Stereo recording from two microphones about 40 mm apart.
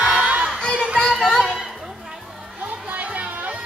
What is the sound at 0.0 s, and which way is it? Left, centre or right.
Crowd, right.